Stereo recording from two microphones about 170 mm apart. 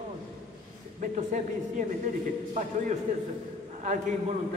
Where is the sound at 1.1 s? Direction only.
50° right (ahead or behind).